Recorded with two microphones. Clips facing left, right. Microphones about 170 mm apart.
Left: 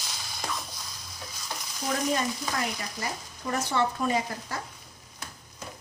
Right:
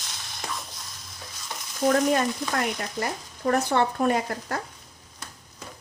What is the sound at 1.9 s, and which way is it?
Stir, 55° right (ahead or behind).